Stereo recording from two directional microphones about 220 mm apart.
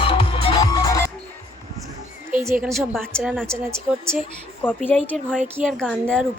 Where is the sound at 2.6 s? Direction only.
Centre (ahead or behind).